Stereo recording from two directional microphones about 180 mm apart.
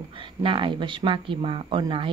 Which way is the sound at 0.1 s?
30° right (ahead or behind).